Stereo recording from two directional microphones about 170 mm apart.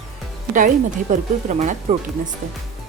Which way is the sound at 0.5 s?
50° right (ahead or behind).